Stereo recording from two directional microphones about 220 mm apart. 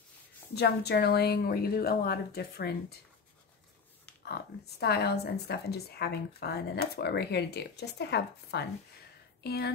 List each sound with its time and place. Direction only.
0.6 s a woman's voice: 50° left (ahead or behind)
4.2 s a woman's voice: 45° left (ahead or behind)